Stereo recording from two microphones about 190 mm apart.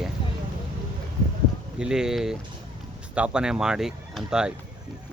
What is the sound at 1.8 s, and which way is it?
Speech, 5° right (ahead or behind).